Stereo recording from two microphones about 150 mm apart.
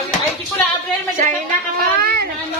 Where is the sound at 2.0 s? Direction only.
90° right.